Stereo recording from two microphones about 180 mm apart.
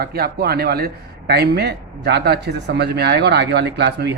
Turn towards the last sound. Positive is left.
turn(degrees=-70)  # may be behind; listen again after turning